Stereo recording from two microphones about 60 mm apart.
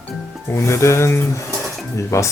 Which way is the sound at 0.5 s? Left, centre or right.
Left.